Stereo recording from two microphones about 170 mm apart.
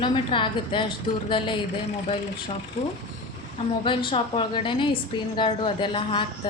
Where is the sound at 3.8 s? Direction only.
30° left (ahead or behind).